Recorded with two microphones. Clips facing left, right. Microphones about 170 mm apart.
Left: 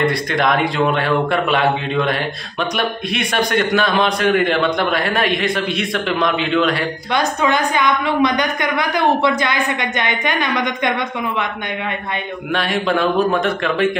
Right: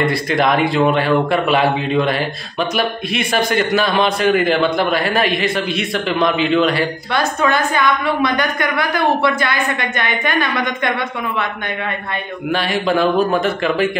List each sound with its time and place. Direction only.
0.0 s a man's voice: centre (ahead or behind)
7.2 s a woman's voice: 20° left (ahead or behind)
12.5 s a man's voice: centre (ahead or behind)